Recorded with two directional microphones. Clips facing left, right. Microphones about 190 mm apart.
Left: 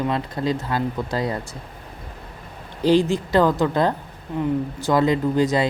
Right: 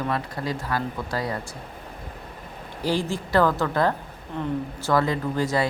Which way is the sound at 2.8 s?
20° left (ahead or behind).